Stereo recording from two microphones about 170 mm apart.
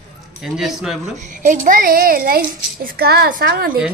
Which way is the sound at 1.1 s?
45° right (ahead or behind).